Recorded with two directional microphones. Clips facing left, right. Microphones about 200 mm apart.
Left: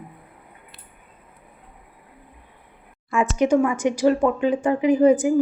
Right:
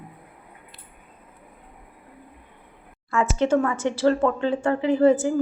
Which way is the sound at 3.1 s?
15° left (ahead or behind).